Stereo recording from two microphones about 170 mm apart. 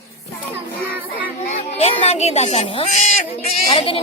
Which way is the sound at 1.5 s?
40° left (ahead or behind).